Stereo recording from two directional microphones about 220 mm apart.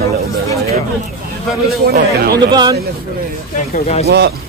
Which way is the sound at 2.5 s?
20° right (ahead or behind).